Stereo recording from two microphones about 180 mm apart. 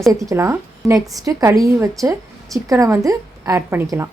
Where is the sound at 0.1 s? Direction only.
20° right (ahead or behind).